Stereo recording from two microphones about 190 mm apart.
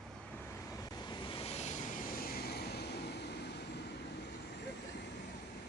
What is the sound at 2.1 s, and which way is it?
Vehicle, 50° left (ahead or behind).